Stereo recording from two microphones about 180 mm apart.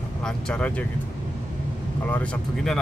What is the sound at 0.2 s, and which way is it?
Speech, 5° left (ahead or behind).